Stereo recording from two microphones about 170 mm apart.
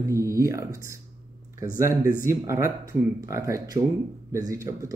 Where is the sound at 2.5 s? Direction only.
15° right (ahead or behind).